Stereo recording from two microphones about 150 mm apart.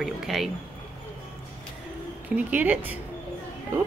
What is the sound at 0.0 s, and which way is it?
Speech, centre (ahead or behind).